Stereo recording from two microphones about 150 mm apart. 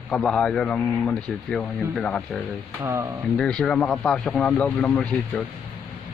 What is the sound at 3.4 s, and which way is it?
Speech, 5° left (ahead or behind).